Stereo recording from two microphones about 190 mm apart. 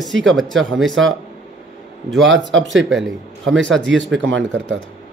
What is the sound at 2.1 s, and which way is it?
Speech, 90° right.